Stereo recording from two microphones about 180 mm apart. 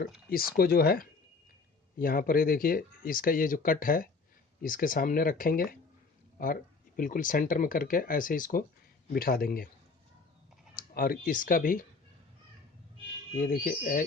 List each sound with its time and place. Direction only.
0.3 s speech: 55° left (ahead or behind)
10.8 s speech: 55° left (ahead or behind)
13.3 s speech: 55° left (ahead or behind)